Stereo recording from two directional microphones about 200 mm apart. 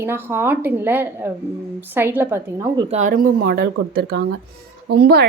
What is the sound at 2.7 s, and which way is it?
A woman's voice, 35° right (ahead or behind).